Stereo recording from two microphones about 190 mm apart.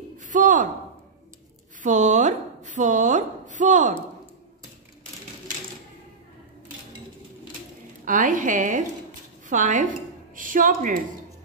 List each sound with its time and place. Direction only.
0.2 s a sound: 45° right (ahead or behind)
1.8 s a woman's voice: 40° right (ahead or behind)
8.0 s a woman's voice: 45° right (ahead or behind)